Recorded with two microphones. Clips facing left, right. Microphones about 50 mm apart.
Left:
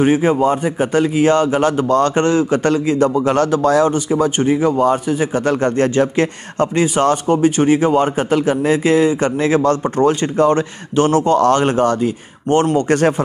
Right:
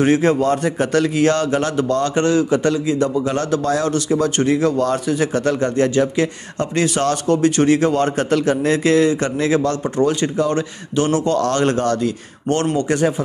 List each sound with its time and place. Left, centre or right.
0.0 s speech: centre; by 3.9 s left
4.4 s speech: centre
5.5 s speech: left
6.7 s speech: left
12.7 s speech: left